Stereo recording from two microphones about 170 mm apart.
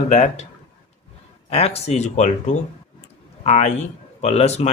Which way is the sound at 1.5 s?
35° left (ahead or behind).